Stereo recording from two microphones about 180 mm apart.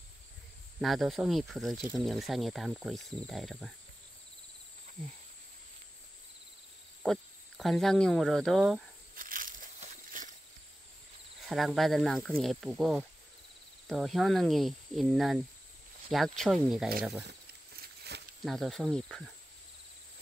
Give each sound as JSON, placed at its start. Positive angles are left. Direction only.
{"t": 0.7, "sound": "cricket", "side_deg": 0}
{"t": 7.1, "sound": "speech", "side_deg": 0}
{"t": 9.1, "sound": "crushing", "side_deg": -50}
{"t": 11.4, "sound": "cricket", "side_deg": 0}
{"t": 18.1, "sound": "snake", "side_deg": -65}
{"t": 18.4, "sound": "cricket", "side_deg": 0}